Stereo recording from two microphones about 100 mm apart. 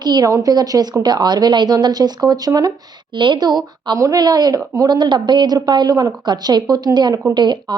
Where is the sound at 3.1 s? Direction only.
50° right (ahead or behind).